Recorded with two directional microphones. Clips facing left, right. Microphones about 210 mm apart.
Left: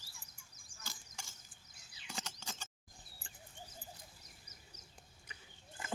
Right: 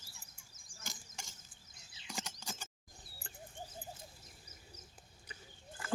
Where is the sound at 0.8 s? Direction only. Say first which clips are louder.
Right 2 dB; 15° right (ahead or behind).